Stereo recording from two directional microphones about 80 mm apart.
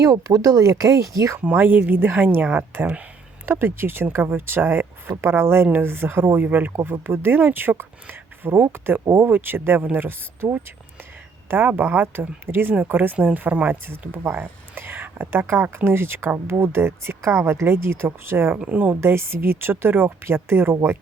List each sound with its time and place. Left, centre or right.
0.0 s speech: right
1.4 s speech: right
18.6 s a woman's voice: centre
18.9 s speech: right